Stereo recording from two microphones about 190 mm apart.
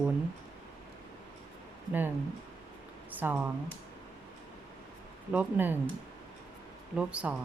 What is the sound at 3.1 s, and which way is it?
Speech, 10° right (ahead or behind).